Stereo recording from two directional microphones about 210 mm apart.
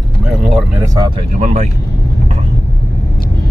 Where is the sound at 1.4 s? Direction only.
35° right (ahead or behind).